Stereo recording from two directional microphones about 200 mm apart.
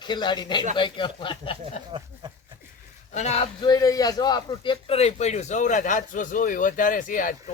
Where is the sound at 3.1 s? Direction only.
35° left (ahead or behind).